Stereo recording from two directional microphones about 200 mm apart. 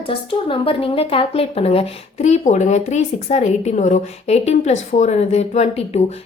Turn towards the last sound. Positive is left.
turn(degrees=30)  # may be behind; listen again after turning